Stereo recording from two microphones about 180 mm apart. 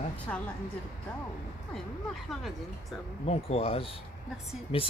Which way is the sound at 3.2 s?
35° left (ahead or behind).